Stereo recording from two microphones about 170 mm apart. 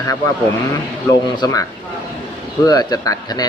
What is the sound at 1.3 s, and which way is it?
Speech, 25° left (ahead or behind).